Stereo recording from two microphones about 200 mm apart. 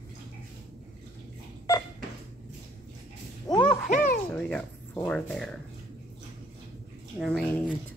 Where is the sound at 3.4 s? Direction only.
20° left (ahead or behind).